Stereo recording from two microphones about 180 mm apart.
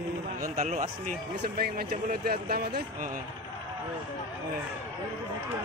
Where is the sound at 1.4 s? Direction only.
60° right (ahead or behind).